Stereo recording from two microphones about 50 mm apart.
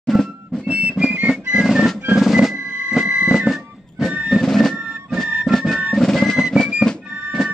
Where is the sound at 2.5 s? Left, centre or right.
Centre.